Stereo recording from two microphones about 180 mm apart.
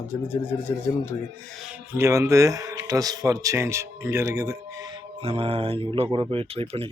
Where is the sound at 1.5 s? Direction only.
10° right (ahead or behind).